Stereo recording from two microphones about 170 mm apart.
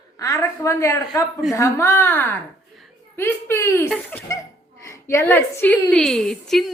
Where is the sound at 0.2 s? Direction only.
20° left (ahead or behind).